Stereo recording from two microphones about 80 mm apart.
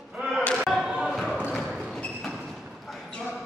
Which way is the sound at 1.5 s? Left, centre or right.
Centre.